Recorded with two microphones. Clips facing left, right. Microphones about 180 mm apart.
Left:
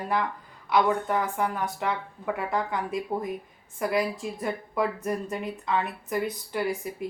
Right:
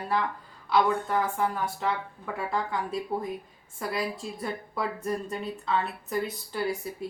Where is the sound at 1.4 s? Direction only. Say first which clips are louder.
Even; 15° left (ahead or behind).